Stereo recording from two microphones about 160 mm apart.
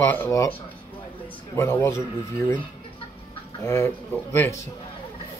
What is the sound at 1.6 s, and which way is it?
Speech, 15° left (ahead or behind).